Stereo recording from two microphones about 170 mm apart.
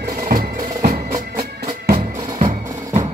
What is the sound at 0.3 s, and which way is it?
Music, 55° right (ahead or behind).